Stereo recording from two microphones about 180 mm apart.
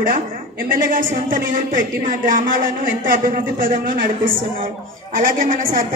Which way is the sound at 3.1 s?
50° right (ahead or behind).